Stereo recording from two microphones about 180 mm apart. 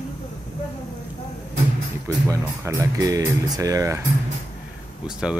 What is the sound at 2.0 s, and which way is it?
Speech, 15° right (ahead or behind).